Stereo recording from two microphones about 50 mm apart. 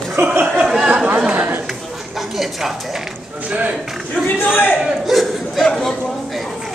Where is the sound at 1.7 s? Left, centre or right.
Centre.